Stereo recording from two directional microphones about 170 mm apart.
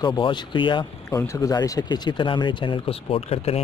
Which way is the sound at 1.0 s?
20° left (ahead or behind).